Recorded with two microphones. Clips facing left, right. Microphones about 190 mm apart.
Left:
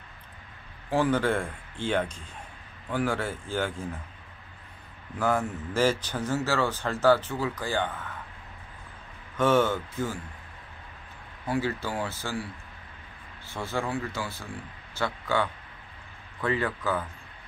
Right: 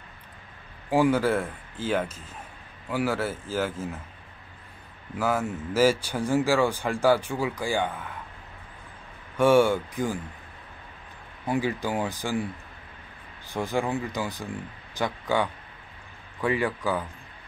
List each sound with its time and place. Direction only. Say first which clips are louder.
0.8 s speech: right 3 dB; 10° right (ahead or behind)
5.2 s speech: even; 5° right (ahead or behind)
9.4 s speech: right 4 dB; 10° right (ahead or behind)
11.4 s speech: right 2 dB; 15° right (ahead or behind)
13.5 s speech: right 4 dB; 15° right (ahead or behind)